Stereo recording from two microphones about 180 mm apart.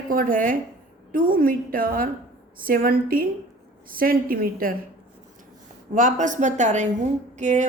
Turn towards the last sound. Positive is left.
turn(degrees=-40)  # may be behind; listen again after turning